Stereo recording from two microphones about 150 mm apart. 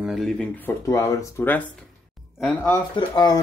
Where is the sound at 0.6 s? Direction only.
20° left (ahead or behind).